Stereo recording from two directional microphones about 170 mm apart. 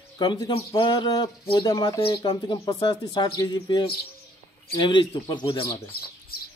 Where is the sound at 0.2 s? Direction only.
25° left (ahead or behind).